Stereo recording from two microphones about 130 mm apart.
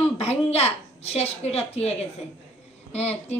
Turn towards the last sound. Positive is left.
turn(degrees=55)  # may be behind; listen again after turning